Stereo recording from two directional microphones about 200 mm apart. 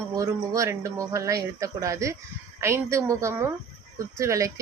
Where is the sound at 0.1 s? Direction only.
15° right (ahead or behind).